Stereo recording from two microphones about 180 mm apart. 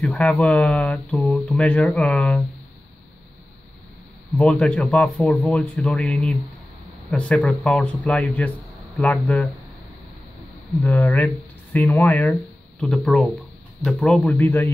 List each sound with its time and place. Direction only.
0.0 s speech: centre (ahead or behind)
4.4 s speech: 5° left (ahead or behind)
11.1 s speech: 5° left (ahead or behind)
11.9 s speech: 15° left (ahead or behind)
12.8 s speech: centre (ahead or behind)